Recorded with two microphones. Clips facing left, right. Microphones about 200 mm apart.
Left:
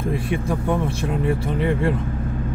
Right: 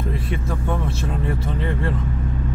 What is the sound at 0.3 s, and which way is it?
Speech, 15° left (ahead or behind).